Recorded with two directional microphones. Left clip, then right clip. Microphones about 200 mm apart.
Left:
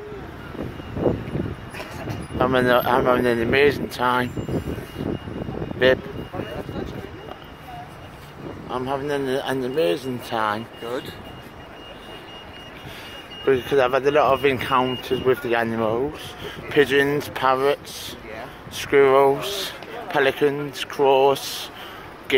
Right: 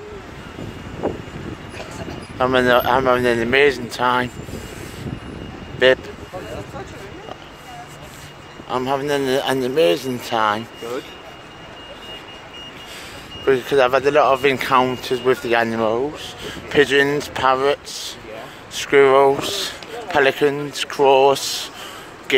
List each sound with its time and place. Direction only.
2.3 s speech: 5° right (ahead or behind)
5.8 s speech: 5° right (ahead or behind)
8.6 s speech: 15° right (ahead or behind)
13.5 s speech: centre (ahead or behind)